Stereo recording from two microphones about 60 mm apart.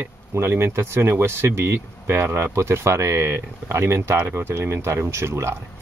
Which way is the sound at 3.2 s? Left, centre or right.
Right.